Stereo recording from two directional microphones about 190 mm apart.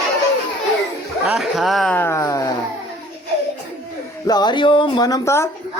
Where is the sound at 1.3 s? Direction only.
Centre (ahead or behind); by 2.5 s 15° left (ahead or behind).